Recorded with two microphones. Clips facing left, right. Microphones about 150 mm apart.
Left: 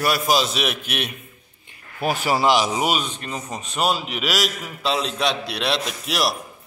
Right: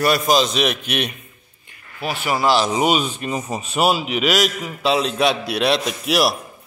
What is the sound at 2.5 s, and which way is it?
Speech, 10° left (ahead or behind).